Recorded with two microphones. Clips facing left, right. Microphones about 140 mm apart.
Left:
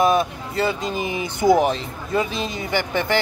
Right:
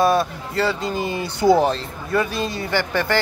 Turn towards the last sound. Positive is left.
turn(degrees=20)  # may be behind; listen again after turning